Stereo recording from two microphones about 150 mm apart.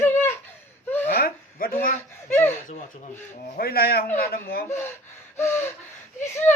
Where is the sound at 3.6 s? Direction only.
90° left.